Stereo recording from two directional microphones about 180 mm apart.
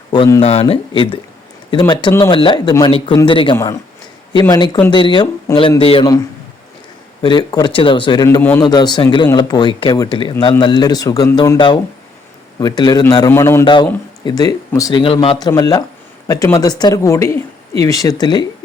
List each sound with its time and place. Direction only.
0.1 s speech: 20° left (ahead or behind)
0.4 s speech: 35° left (ahead or behind)
7.2 s speech: 25° left (ahead or behind)
8.4 s a man's voice: 10° left (ahead or behind)
8.6 s speech: 25° left (ahead or behind)